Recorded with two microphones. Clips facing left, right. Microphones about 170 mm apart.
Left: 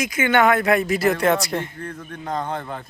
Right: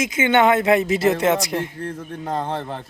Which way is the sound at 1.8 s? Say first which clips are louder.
Right 3 dB; 30° right (ahead or behind).